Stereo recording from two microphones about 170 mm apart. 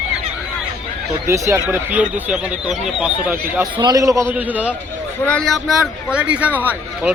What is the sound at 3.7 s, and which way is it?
Speech, 25° right (ahead or behind).